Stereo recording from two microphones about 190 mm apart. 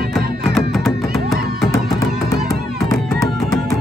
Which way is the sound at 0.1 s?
Centre (ahead or behind).